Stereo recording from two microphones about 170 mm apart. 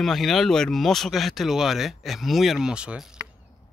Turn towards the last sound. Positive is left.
turn(degrees=-5)  # may be behind; listen again after turning